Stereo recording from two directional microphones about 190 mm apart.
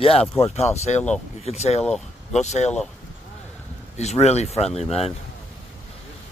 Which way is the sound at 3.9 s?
35° left (ahead or behind).